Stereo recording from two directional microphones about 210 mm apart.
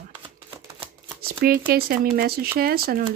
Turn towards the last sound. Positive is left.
turn(degrees=-45)  # may be behind; listen again after turning